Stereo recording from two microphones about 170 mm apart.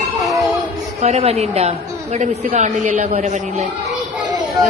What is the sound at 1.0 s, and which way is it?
A woman's voice, 35° right (ahead or behind).